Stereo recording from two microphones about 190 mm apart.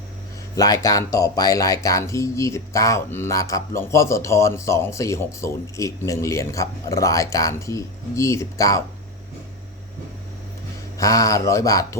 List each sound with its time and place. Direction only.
0.5 s speech: 20° left (ahead or behind)
10.9 s speech: 15° left (ahead or behind)